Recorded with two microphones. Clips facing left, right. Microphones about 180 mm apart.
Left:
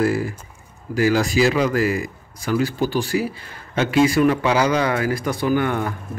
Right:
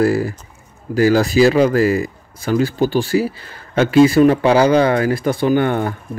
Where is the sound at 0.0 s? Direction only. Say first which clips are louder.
Right 4 dB; 35° right (ahead or behind).